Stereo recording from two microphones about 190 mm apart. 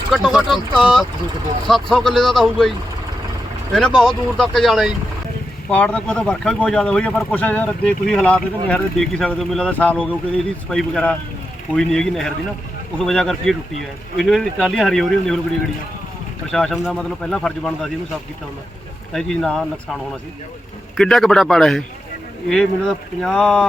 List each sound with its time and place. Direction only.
0.1 s speech: centre (ahead or behind)
16.5 s speech: 5° left (ahead or behind)
19.1 s speech: 5° left (ahead or behind)
20.9 s speech: centre (ahead or behind)